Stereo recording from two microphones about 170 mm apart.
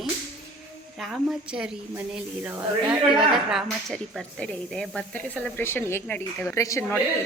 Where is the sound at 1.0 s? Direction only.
5° right (ahead or behind).